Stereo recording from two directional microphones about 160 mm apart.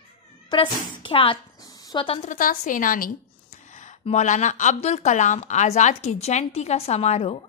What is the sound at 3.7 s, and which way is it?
A woman's voice, 45° left (ahead or behind).